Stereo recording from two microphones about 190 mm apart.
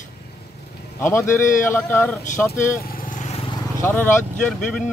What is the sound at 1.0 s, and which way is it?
Speech, 15° left (ahead or behind).